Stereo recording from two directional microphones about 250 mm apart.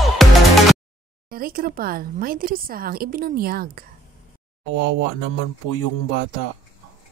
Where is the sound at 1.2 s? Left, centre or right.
Right.